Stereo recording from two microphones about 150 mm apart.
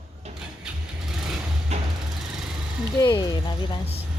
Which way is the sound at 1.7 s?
45° right (ahead or behind).